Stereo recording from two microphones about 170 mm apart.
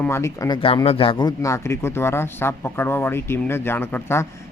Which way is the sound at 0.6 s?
30° left (ahead or behind).